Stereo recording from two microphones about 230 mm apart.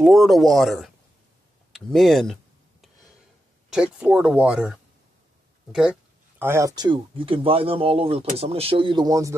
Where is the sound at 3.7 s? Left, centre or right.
Centre.